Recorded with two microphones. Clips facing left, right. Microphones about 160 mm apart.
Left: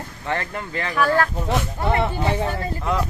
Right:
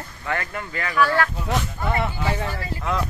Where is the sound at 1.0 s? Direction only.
15° left (ahead or behind).